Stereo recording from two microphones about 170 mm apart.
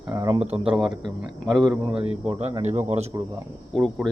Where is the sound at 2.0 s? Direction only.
35° right (ahead or behind).